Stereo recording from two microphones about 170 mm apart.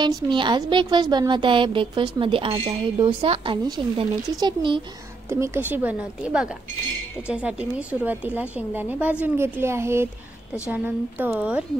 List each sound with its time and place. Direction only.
0.0 s a woman's voice: 25° right (ahead or behind)
5.3 s a woman's voice: 15° right (ahead or behind)